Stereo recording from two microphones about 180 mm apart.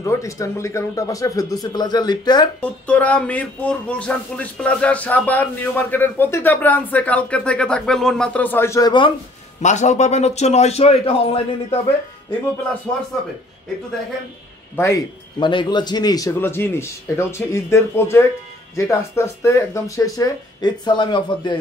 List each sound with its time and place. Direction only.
0.0 s speech: 15° left (ahead or behind)
2.6 s speech: 10° left (ahead or behind); by 9.1 s 25° left (ahead or behind)
9.6 s a man's voice: 40° left (ahead or behind)
14.8 s speech: 20° left (ahead or behind)